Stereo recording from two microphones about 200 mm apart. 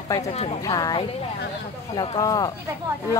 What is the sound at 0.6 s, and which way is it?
Speech, 20° left (ahead or behind).